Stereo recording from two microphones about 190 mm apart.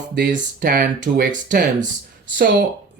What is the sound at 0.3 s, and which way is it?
Speech, 45° right (ahead or behind).